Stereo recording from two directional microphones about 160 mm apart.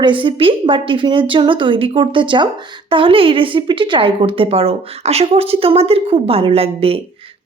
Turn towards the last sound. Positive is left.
turn(degrees=-35)  # may be behind; listen again after turning